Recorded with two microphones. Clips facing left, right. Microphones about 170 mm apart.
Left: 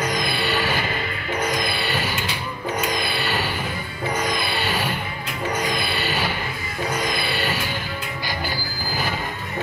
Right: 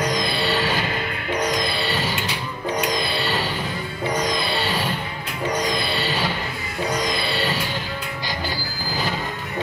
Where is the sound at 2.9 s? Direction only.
55° left (ahead or behind).